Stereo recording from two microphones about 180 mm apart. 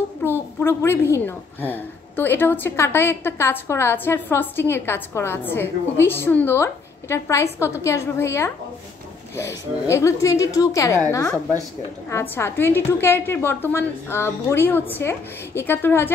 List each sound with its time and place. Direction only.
0.2 s a woman's voice: 10° left (ahead or behind)
12.1 s a woman's voice: 15° left (ahead or behind)